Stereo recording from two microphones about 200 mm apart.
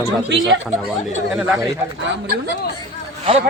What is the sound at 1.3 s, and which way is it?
Speech, 5° right (ahead or behind).